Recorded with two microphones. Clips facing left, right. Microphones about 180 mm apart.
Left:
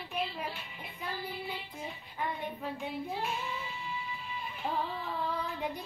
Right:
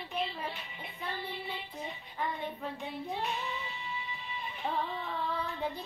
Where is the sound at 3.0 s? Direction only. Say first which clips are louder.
Even; 5° left (ahead or behind).